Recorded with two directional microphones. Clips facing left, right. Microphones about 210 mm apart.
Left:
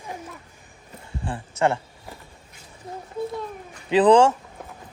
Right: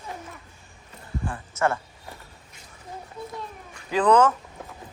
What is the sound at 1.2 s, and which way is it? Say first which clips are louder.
Speech: left 3 dB; 25° left (ahead or behind).